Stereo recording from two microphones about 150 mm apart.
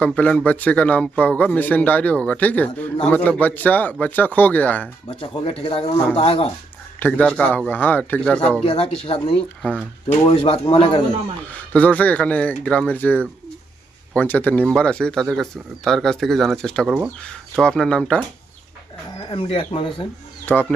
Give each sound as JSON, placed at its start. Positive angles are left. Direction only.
{"t": 0.0, "sound": "speech", "side_deg": 10}
{"t": 5.0, "sound": "speech", "side_deg": 35}
{"t": 7.0, "sound": "speech", "side_deg": 10}
{"t": 8.6, "sound": "speech", "side_deg": 40}
{"t": 11.5, "sound": "speech", "side_deg": 10}
{"t": 19.3, "sound": "speech", "side_deg": 35}
{"t": 20.5, "sound": "speech", "side_deg": 10}